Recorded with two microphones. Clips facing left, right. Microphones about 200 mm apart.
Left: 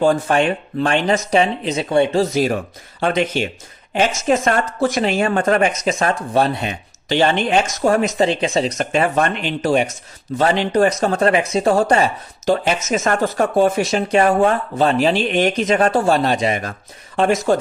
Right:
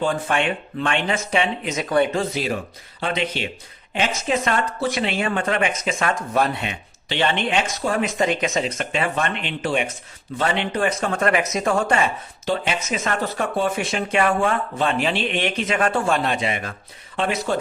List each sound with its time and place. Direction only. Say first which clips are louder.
0.0 s speech: left 6 dB; 40° left (ahead or behind)
3.0 s speech: left 6 dB; 45° left (ahead or behind)